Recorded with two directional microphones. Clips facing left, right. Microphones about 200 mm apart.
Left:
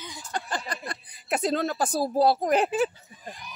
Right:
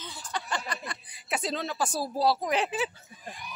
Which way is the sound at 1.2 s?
50° left (ahead or behind).